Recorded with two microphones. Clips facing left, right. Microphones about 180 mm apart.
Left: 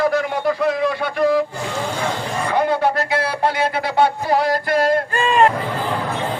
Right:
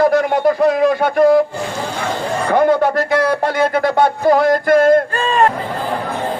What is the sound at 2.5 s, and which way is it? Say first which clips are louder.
A man's voice: right 5 dB; 50° right (ahead or behind).